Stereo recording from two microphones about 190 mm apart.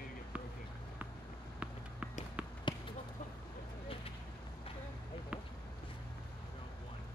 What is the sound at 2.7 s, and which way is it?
Basketball bounce, 25° left (ahead or behind).